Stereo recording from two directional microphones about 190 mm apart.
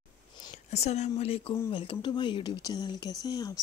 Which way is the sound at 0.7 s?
35° left (ahead or behind).